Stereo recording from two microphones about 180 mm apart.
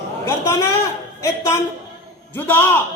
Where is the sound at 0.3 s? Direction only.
20° left (ahead or behind).